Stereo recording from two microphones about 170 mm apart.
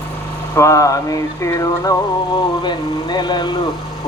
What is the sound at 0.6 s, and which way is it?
Music, 20° left (ahead or behind).